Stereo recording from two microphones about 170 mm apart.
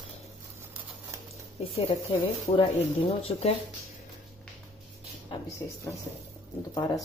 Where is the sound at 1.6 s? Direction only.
35° left (ahead or behind).